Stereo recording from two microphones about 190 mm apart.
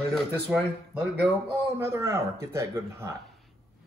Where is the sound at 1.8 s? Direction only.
15° right (ahead or behind).